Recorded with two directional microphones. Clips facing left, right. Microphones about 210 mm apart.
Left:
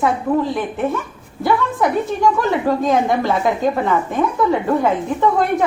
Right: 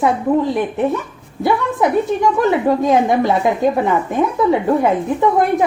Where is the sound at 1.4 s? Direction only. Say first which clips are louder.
Right 1 dB; 20° right (ahead or behind).